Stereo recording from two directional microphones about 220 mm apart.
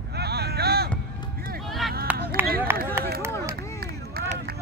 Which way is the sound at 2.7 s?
10° right (ahead or behind).